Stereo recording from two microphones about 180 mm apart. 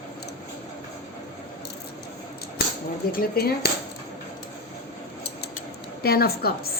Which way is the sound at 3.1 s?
55° left (ahead or behind).